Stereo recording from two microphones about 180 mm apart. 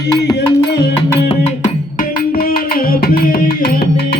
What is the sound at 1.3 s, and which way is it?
Music, 40° left (ahead or behind).